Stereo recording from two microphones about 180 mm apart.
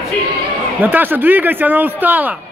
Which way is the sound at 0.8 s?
10° right (ahead or behind).